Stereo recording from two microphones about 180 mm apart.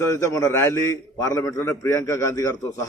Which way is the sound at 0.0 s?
15° left (ahead or behind).